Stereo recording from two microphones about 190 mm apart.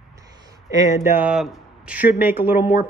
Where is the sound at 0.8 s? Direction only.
40° left (ahead or behind).